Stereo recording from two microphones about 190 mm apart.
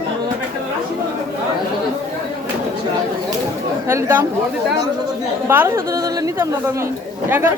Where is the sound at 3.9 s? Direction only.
10° right (ahead or behind).